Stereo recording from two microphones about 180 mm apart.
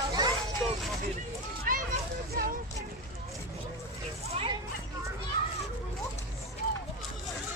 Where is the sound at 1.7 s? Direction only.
50° right (ahead or behind).